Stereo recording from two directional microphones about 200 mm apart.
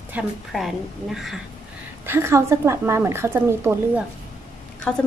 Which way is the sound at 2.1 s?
15° right (ahead or behind).